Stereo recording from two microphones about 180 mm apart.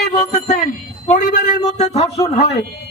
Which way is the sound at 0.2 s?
40° left (ahead or behind).